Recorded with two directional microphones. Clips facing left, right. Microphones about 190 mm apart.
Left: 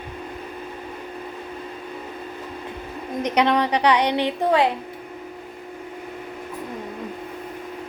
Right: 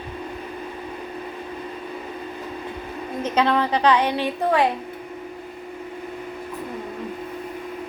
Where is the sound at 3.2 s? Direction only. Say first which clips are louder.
Left 1 dB; 15° left (ahead or behind).